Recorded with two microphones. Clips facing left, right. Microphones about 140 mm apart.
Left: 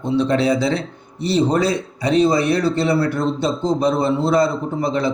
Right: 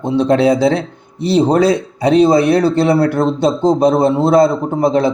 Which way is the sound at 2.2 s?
55° right (ahead or behind).